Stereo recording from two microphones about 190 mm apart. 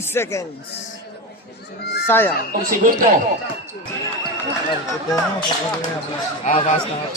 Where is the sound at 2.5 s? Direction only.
45° right (ahead or behind).